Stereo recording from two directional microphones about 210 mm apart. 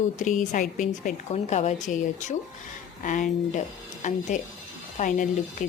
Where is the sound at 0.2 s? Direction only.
40° left (ahead or behind).